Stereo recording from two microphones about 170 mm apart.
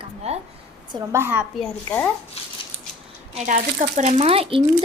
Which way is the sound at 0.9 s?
15° right (ahead or behind).